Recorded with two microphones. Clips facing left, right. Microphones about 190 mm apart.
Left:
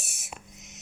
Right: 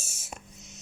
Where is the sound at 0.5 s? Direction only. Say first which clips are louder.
Even; 20° left (ahead or behind).